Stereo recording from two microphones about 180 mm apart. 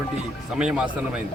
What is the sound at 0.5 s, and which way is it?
Speech, 5° right (ahead or behind).